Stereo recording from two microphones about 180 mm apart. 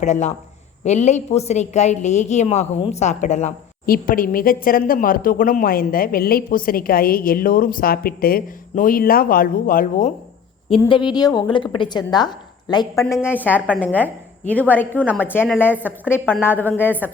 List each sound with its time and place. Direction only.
0.0 s a woman's voice: 40° left (ahead or behind)
3.8 s speech: 55° left (ahead or behind)
10.7 s a woman's voice: 30° left (ahead or behind); by 16.9 s 10° left (ahead or behind)